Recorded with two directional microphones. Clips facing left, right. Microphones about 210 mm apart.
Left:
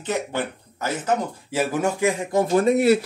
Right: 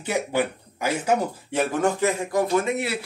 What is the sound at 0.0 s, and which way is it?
Speech, 10° right (ahead or behind).